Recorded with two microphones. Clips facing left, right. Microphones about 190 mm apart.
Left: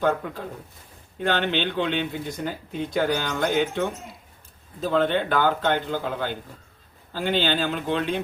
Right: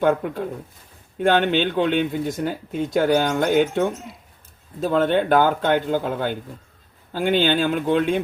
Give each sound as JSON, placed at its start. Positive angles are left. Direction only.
{"t": 0.0, "sound": "speech", "side_deg": -55}